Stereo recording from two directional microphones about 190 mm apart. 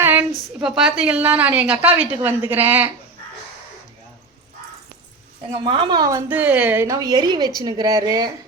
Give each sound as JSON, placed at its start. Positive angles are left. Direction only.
{"t": 0.0, "sound": "a sound", "side_deg": -10}
{"t": 0.8, "sound": "a woman's voice", "side_deg": -5}
{"t": 5.6, "sound": "a woman's voice", "side_deg": -25}